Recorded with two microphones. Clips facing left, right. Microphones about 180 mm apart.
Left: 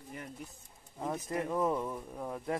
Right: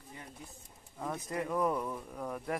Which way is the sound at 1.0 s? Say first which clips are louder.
Left 2 dB; 20° left (ahead or behind).